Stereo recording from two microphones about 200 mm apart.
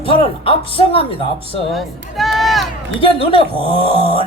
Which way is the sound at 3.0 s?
25° left (ahead or behind).